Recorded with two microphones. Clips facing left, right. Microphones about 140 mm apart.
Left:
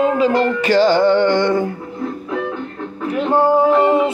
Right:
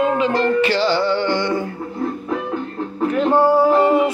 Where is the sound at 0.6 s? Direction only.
45° left (ahead or behind).